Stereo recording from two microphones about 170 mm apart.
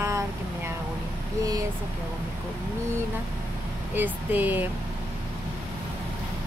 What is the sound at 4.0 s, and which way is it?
Speech, 10° right (ahead or behind).